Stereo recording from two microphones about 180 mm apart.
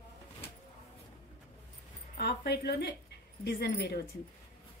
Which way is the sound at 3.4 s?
70° left (ahead or behind).